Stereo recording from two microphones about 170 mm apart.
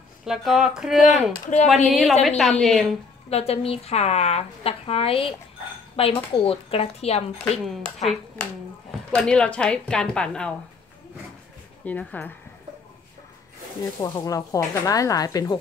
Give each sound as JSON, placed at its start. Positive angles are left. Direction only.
{"t": 0.2, "sound": "a woman's voice", "side_deg": -5}
{"t": 0.9, "sound": "speech", "side_deg": 45}
{"t": 1.9, "sound": "a woman's voice", "side_deg": 0}
{"t": 3.3, "sound": "a woman's voice", "side_deg": 35}
{"t": 7.6, "sound": "a woman's voice", "side_deg": 0}
{"t": 11.8, "sound": "speech", "side_deg": 10}
{"t": 14.0, "sound": "speech", "side_deg": 20}